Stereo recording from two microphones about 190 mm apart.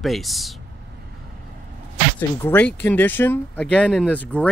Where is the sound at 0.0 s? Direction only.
Centre (ahead or behind).